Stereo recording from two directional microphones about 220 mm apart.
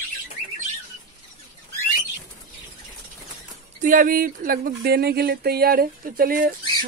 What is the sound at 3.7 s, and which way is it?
Speech, 35° right (ahead or behind).